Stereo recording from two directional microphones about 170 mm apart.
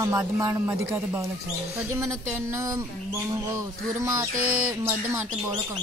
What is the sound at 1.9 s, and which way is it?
Speech, 15° right (ahead or behind).